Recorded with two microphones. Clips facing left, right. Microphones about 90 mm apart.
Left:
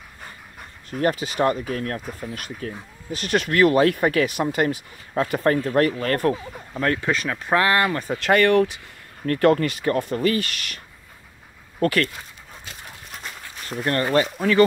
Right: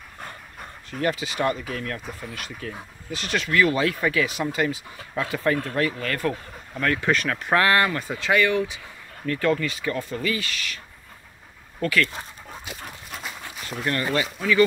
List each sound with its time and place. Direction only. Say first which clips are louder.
0.8 s speech: left 3 dB; 40° left (ahead or behind)
7.1 s speech: even; 20° left (ahead or behind)
8.2 s speech: left 5 dB; 55° left (ahead or behind)
11.8 s speech: left 2 dB; 45° left (ahead or behind)
13.7 s speech: left 3 dB; 40° left (ahead or behind)